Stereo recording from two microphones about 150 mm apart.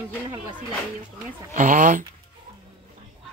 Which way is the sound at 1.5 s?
60° right (ahead or behind).